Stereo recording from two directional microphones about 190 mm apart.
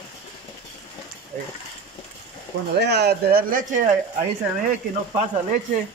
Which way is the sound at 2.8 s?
60° right (ahead or behind).